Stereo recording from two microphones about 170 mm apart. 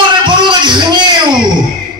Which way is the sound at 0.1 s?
30° right (ahead or behind).